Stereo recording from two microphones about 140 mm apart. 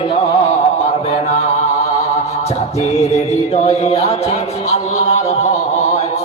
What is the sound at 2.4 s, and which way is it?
Music, 50° left (ahead or behind).